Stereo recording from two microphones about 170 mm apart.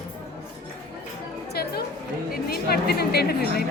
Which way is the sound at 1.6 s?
65° left (ahead or behind).